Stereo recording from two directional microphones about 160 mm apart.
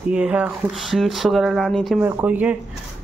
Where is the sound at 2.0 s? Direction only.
10° right (ahead or behind).